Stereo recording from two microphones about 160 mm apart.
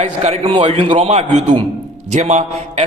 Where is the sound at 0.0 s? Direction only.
40° right (ahead or behind).